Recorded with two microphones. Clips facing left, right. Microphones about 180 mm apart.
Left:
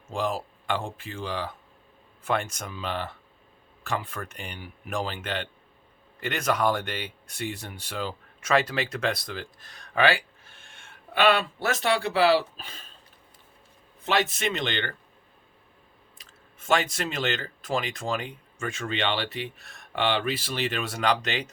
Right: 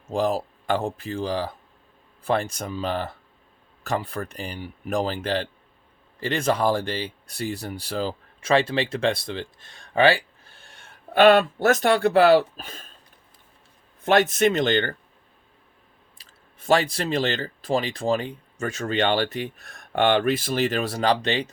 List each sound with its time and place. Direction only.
0.1 s speech: 40° right (ahead or behind)
14.0 s speech: 50° right (ahead or behind)
16.1 s speech: 35° right (ahead or behind)